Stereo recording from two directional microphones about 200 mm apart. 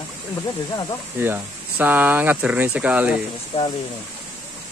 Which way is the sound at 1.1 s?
10° right (ahead or behind).